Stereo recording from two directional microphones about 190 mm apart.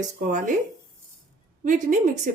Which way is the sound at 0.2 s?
45° right (ahead or behind).